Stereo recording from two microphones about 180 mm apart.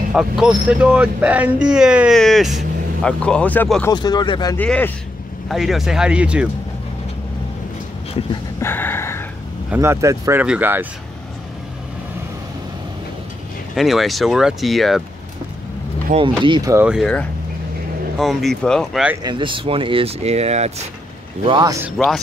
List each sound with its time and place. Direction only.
0.1 s speech: 5° right (ahead or behind)
3.9 s speech: 25° left (ahead or behind)
4.6 s speech: 10° left (ahead or behind)
5.5 s speech: centre (ahead or behind)
8.5 s a sound: 10° left (ahead or behind)
9.7 s speech: 15° right (ahead or behind)
13.7 s speech: centre (ahead or behind)
16.2 s speech: 25° right (ahead or behind)
16.7 s speech: 5° right (ahead or behind)
19.2 s speech: 30° right (ahead or behind)
21.5 s speech: 20° right (ahead or behind)
21.8 s speech: centre (ahead or behind)